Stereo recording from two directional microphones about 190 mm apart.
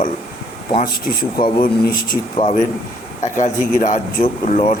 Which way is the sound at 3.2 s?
40° left (ahead or behind).